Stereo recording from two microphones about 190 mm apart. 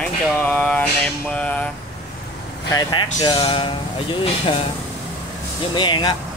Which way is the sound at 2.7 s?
20° left (ahead or behind).